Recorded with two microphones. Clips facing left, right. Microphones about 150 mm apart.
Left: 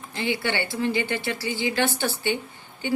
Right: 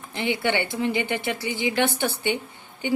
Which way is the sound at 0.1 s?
20° right (ahead or behind).